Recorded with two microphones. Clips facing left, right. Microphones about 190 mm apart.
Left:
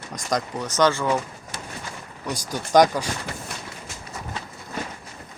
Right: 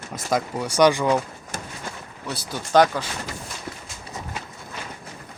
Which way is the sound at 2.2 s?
15° left (ahead or behind).